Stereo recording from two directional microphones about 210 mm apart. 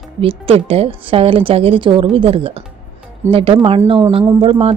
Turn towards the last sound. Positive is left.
turn(degrees=-30)  # may be behind; listen again after turning